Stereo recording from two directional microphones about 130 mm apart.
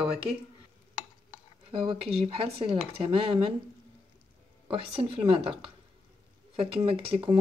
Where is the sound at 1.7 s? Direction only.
40° right (ahead or behind).